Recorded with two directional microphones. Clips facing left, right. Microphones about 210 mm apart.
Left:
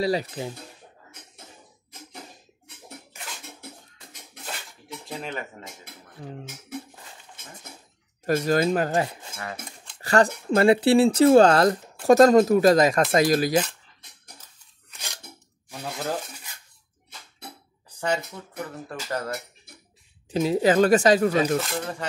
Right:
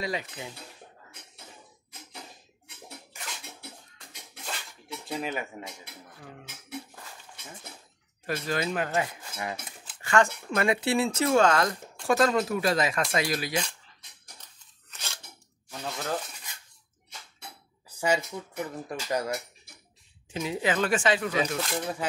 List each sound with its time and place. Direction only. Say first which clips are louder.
0.0 s speech: left 8 dB; 35° left (ahead or behind)
5.0 s speech: right 1 dB; centre (ahead or behind)
6.1 s speech: left 10 dB; 30° left (ahead or behind)
8.3 s speech: left 8 dB; 45° left (ahead or behind)
14.9 s scissors: left 1 dB; 15° left (ahead or behind)
17.8 s a sound: even; 10° right (ahead or behind)
18.9 s speech: right 1 dB; 15° right (ahead or behind)
20.2 s speech: left 8 dB; 35° left (ahead or behind)
21.6 s speech: left 1 dB; 5° right (ahead or behind)